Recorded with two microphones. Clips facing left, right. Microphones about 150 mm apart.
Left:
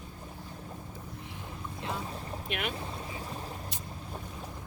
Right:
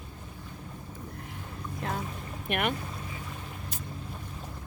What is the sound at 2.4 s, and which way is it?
Speech, 55° right (ahead or behind).